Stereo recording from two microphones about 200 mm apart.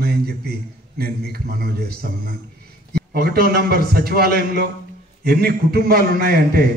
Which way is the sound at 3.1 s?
50° right (ahead or behind).